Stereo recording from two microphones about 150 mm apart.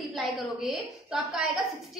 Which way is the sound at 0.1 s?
Centre (ahead or behind).